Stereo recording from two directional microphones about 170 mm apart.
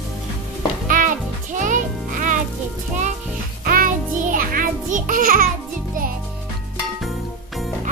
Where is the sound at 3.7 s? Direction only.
55° right (ahead or behind).